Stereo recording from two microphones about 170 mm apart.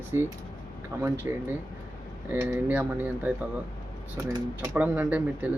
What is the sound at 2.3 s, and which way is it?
Speech, 15° right (ahead or behind).